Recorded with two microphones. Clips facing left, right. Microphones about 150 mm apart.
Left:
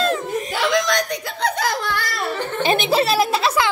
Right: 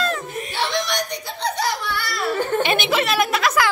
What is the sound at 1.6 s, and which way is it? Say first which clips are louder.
Laughter: left 2 dB; 90° left.